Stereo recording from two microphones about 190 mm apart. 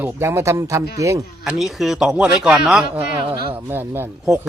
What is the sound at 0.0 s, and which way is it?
Speech, 10° right (ahead or behind).